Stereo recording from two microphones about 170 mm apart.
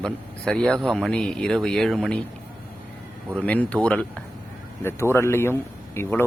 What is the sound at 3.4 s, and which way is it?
Speech, 10° left (ahead or behind).